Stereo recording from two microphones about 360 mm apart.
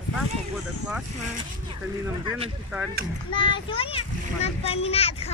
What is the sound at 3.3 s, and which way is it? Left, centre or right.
A child's voice, centre.